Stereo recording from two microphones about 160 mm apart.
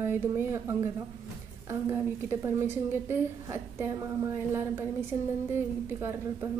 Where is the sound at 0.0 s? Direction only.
15° right (ahead or behind).